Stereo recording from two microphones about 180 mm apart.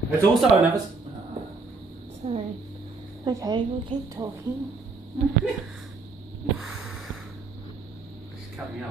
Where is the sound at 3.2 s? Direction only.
20° right (ahead or behind).